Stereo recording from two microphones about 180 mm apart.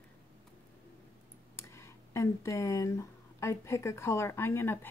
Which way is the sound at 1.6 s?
15° left (ahead or behind).